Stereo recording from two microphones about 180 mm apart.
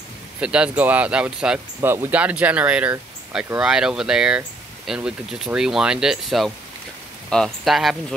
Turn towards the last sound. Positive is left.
turn(degrees=0)  # may be behind; listen again after turning